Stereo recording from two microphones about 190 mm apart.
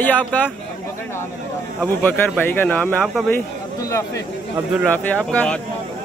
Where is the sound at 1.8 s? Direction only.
5° left (ahead or behind).